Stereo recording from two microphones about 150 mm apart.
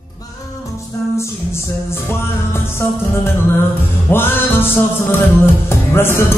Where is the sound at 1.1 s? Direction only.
15° left (ahead or behind).